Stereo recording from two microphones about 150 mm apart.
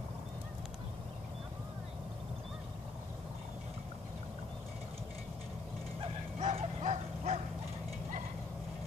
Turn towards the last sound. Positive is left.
turn(degrees=-45)  # may be behind; listen again after turning